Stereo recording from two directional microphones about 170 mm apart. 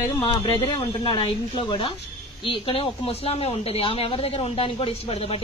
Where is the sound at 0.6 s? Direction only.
30° left (ahead or behind).